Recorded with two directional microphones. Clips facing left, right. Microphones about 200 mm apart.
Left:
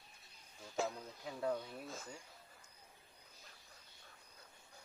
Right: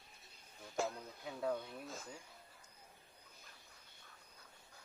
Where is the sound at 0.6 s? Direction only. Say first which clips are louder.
Even; centre (ahead or behind).